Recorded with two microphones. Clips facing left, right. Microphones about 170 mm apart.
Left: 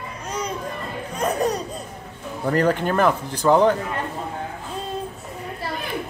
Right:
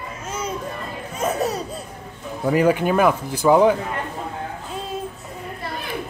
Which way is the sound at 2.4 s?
10° right (ahead or behind).